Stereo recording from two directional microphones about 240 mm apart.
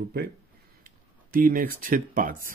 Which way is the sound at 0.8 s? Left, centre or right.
Right.